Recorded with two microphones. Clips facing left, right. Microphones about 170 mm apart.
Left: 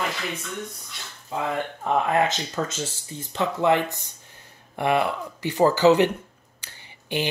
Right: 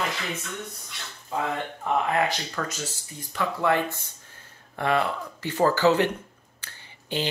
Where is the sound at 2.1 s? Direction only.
20° left (ahead or behind).